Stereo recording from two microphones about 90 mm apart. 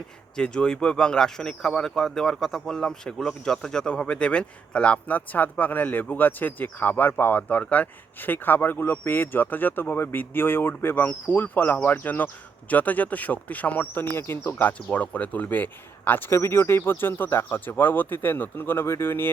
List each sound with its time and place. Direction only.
0.3 s speech: 10° left (ahead or behind); by 19.3 s 25° left (ahead or behind)